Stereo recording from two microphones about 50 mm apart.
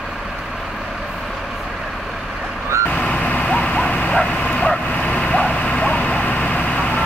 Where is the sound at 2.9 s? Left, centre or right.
Left.